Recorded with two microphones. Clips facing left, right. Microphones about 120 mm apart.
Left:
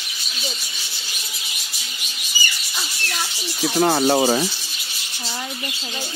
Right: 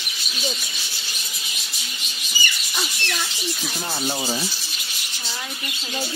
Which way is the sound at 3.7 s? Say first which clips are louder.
Left 13 dB; 90° left.